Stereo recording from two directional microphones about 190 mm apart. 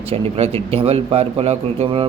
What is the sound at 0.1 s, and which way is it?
Speech, 30° right (ahead or behind).